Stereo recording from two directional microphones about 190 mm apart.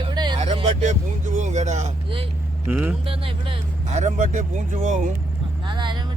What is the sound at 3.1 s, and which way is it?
Speech, 30° right (ahead or behind).